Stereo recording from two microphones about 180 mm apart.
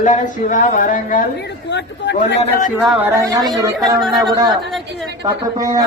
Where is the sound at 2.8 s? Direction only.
10° right (ahead or behind).